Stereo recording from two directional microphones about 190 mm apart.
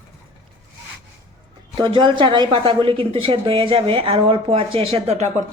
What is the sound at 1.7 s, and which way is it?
A woman's voice, 25° right (ahead or behind).